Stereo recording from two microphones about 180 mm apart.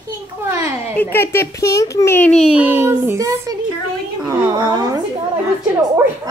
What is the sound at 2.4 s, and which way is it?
Speech, 5° right (ahead or behind).